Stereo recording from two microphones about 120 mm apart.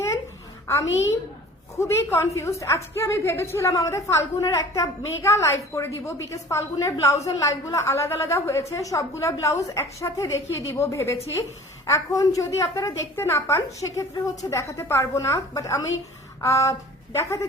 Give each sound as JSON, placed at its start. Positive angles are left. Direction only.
{"t": 0.7, "sound": "a woman's voice", "side_deg": 25}